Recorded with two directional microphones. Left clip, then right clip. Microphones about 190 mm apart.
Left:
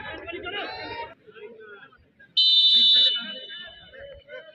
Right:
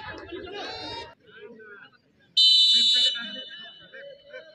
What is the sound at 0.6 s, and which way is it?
Chatter, 90° right.